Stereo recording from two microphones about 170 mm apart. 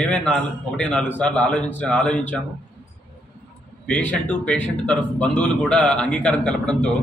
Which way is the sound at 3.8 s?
10° left (ahead or behind).